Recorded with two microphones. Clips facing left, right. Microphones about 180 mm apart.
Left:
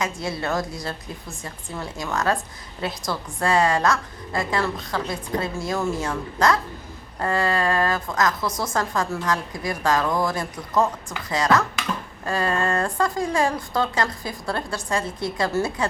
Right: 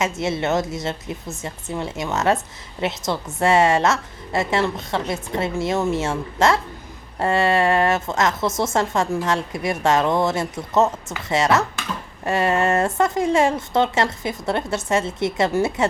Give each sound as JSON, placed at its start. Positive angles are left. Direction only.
{"t": 0.0, "sound": "a woman's voice", "side_deg": -25}